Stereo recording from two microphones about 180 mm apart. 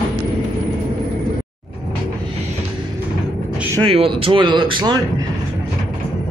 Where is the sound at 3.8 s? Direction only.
30° right (ahead or behind).